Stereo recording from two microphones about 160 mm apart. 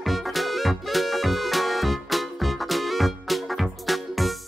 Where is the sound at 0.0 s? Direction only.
Centre (ahead or behind).